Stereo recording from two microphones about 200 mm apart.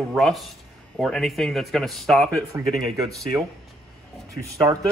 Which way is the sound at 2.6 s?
Centre (ahead or behind).